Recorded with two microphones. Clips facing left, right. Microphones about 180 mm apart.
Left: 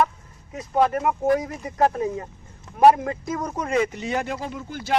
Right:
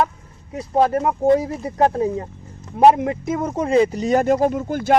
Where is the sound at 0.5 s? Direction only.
30° right (ahead or behind).